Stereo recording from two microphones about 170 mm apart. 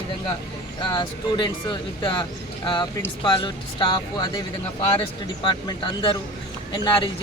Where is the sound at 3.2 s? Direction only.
25° left (ahead or behind).